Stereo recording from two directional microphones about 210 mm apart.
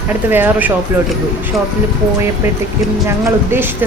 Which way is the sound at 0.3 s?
10° right (ahead or behind).